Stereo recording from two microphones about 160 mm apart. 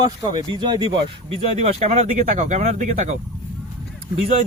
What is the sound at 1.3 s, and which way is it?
Speech, 45° right (ahead or behind).